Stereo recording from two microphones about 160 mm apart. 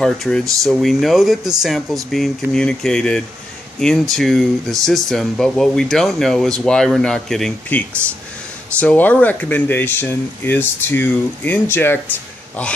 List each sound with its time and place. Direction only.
0.0 s speech: 5° left (ahead or behind)